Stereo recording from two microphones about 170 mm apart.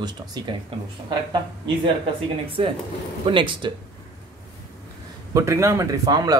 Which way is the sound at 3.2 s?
30° right (ahead or behind).